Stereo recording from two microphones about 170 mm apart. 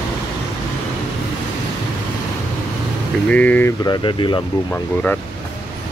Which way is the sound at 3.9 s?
30° left (ahead or behind).